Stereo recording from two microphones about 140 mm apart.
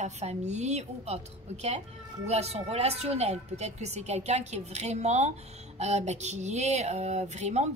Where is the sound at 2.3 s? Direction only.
50° right (ahead or behind).